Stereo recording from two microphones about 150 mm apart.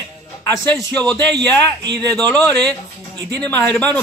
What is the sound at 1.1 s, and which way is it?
Speech, 30° right (ahead or behind).